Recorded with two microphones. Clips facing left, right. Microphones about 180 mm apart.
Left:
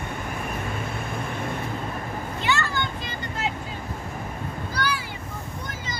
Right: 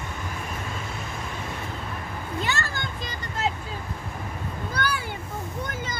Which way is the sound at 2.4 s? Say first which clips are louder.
Left 3 dB; 40° right (ahead or behind).